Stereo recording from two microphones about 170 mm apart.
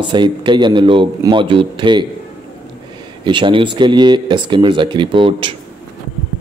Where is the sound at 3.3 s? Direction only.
30° right (ahead or behind).